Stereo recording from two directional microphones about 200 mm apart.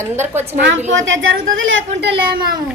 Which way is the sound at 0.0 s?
10° right (ahead or behind).